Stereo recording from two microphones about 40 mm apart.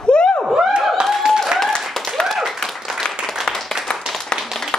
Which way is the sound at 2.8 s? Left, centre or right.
Centre.